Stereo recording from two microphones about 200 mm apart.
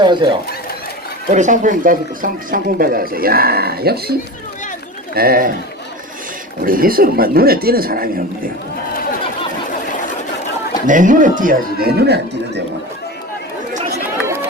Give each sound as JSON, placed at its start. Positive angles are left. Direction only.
{"t": 0.0, "sound": "speech", "side_deg": -25}
{"t": 1.3, "sound": "speech", "side_deg": -40}
{"t": 5.1, "sound": "speech", "side_deg": -50}
{"t": 6.6, "sound": "speech", "side_deg": -45}
{"t": 10.8, "sound": "speech", "side_deg": -40}